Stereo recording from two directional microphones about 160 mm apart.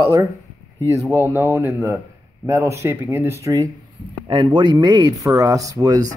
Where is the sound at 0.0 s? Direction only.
20° right (ahead or behind).